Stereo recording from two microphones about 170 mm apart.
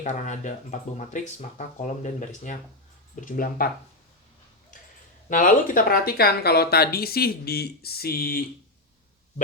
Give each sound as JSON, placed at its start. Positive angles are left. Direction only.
{"t": 0.0, "sound": "speech", "side_deg": 45}
{"t": 4.7, "sound": "a sound", "side_deg": 50}
{"t": 5.3, "sound": "speech", "side_deg": 50}